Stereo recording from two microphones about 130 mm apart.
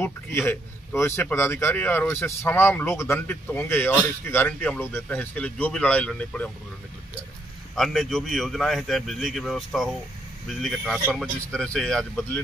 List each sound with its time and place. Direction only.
0.0 s speech: 15° left (ahead or behind)
7.7 s a man's voice: centre (ahead or behind)